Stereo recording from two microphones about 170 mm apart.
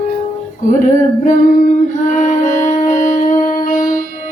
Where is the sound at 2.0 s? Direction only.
50° left (ahead or behind).